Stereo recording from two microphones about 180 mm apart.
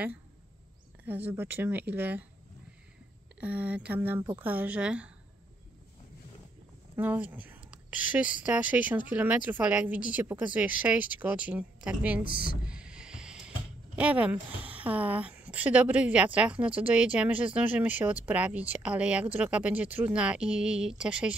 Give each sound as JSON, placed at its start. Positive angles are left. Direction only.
{"t": 1.0, "sound": "a woman's voice", "side_deg": -10}
{"t": 3.3, "sound": "a woman's voice", "side_deg": -10}
{"t": 7.0, "sound": "a woman's voice", "side_deg": -10}
{"t": 12.3, "sound": "speech", "side_deg": 50}
{"t": 12.6, "sound": "snake", "side_deg": -5}
{"t": 13.9, "sound": "a woman's voice", "side_deg": -5}